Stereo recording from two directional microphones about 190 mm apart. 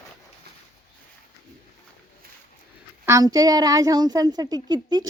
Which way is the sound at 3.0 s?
15° right (ahead or behind).